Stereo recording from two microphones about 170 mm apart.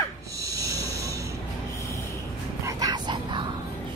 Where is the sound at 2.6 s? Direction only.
20° right (ahead or behind).